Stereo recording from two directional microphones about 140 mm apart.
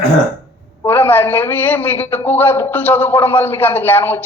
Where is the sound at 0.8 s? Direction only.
15° left (ahead or behind).